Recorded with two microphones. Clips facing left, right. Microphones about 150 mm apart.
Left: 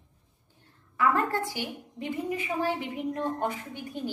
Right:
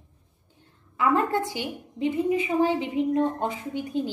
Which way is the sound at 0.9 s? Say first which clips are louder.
Right 3 dB; 20° right (ahead or behind).